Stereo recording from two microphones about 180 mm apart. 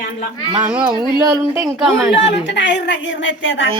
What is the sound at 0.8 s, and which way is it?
Speech, 20° right (ahead or behind).